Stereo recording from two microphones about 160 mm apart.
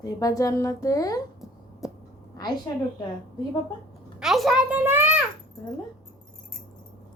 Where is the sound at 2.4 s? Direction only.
25° left (ahead or behind).